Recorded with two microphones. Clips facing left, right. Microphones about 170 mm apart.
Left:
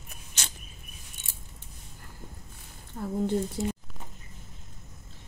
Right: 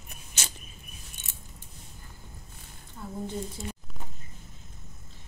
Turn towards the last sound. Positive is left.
turn(degrees=65)  # may be behind; listen again after turning